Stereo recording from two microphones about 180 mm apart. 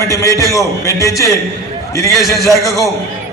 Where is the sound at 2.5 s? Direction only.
15° left (ahead or behind).